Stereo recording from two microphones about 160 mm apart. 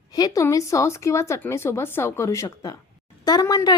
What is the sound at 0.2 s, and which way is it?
A woman's voice, 20° left (ahead or behind).